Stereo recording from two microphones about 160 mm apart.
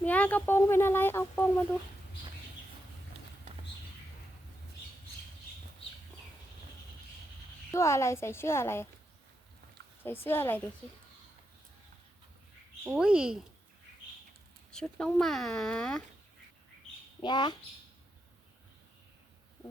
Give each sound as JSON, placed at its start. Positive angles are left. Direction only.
{"t": 0.0, "sound": "speech", "side_deg": 10}
{"t": 7.7, "sound": "speech", "side_deg": 15}
{"t": 10.0, "sound": "speech", "side_deg": 10}
{"t": 12.8, "sound": "speech", "side_deg": -5}
{"t": 14.7, "sound": "speech", "side_deg": 5}
{"t": 17.2, "sound": "speech", "side_deg": 30}